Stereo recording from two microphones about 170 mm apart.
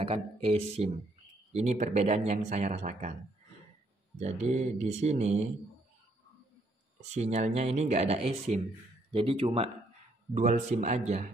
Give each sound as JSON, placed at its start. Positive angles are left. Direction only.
{"t": 0.0, "sound": "speech", "side_deg": -35}
{"t": 4.2, "sound": "speech", "side_deg": -40}
{"t": 7.0, "sound": "speech", "side_deg": -40}
{"t": 10.3, "sound": "speech", "side_deg": -45}